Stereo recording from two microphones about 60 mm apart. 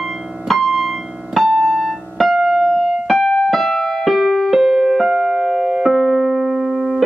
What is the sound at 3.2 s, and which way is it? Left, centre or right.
Keyboard, left.